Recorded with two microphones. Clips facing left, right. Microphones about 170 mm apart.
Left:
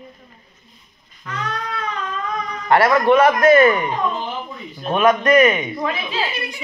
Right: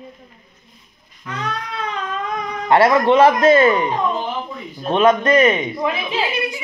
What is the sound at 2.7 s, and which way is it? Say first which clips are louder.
A man's voice: right 1 dB; 25° right (ahead or behind).